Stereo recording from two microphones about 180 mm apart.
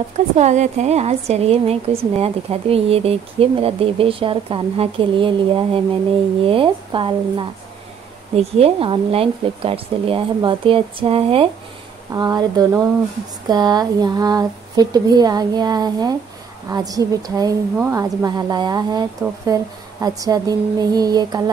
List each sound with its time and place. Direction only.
0.4 s a woman's voice: 40° right (ahead or behind)
12.1 s speech: 20° right (ahead or behind)